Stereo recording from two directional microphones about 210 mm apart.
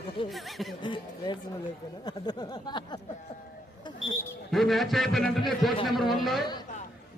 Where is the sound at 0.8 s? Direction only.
20° left (ahead or behind).